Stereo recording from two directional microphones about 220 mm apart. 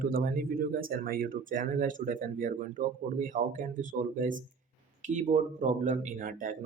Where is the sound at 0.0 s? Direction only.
40° right (ahead or behind).